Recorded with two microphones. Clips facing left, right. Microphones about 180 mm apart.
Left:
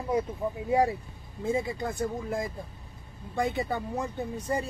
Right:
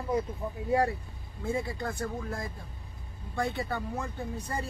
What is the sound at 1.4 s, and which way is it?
Speech, 20° left (ahead or behind).